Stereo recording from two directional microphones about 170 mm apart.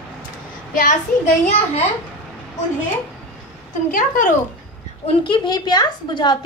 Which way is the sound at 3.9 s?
50° left (ahead or behind).